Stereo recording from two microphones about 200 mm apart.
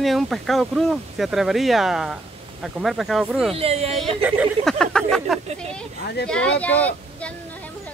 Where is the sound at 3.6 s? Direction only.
30° right (ahead or behind).